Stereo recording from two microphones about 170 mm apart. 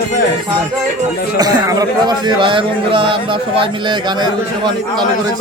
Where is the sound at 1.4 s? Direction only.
20° right (ahead or behind).